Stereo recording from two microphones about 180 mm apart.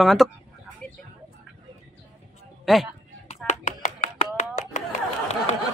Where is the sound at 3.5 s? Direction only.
40° left (ahead or behind).